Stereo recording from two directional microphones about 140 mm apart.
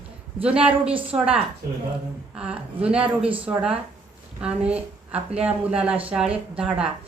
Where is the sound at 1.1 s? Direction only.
20° right (ahead or behind).